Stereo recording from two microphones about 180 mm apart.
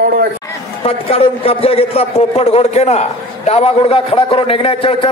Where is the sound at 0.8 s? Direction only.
35° left (ahead or behind).